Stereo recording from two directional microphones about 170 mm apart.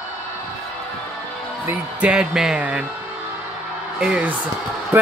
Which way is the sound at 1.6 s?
5° right (ahead or behind).